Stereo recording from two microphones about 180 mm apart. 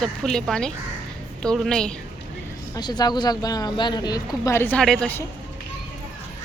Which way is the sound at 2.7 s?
20° left (ahead or behind).